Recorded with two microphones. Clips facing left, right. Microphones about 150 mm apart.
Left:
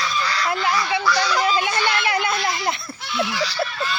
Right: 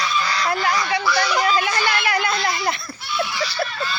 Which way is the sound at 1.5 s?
20° left (ahead or behind).